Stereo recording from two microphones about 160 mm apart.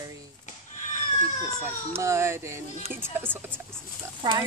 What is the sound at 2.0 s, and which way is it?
Speech, 15° right (ahead or behind).